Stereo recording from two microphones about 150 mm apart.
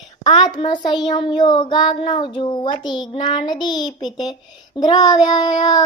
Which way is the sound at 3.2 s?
30° left (ahead or behind).